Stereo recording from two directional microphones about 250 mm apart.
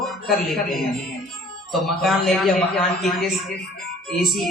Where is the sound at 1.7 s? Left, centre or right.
Centre.